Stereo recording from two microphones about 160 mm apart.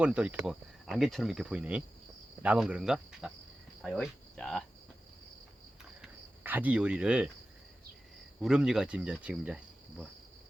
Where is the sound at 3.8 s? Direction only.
5° left (ahead or behind).